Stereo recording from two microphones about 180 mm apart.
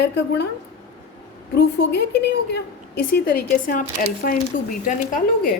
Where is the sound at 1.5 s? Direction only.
70° left (ahead or behind).